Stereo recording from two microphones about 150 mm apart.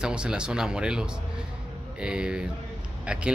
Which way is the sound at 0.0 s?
5° right (ahead or behind).